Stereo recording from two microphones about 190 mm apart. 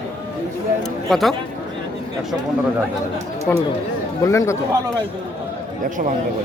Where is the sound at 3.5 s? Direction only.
10° left (ahead or behind).